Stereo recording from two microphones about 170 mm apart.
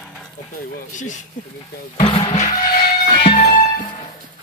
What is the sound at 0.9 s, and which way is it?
Music, 45° left (ahead or behind).